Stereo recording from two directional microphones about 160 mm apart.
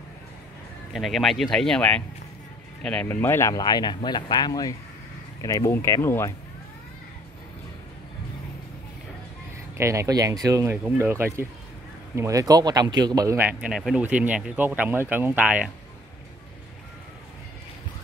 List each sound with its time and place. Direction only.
0.9 s speech: centre (ahead or behind); by 6.3 s 15° left (ahead or behind)
9.8 s speech: 20° right (ahead or behind)